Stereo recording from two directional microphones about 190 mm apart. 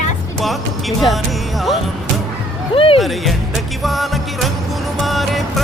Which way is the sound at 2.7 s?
30° left (ahead or behind).